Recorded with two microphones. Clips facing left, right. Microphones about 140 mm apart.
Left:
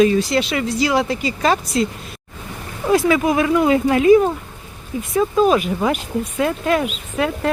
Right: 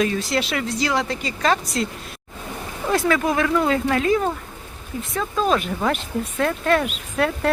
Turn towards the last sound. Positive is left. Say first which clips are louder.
# left 1 dB
turn(degrees=5)  # may be behind; listen again after turning